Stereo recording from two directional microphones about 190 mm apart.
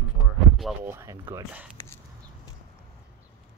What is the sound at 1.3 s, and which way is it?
Speech, 10° right (ahead or behind).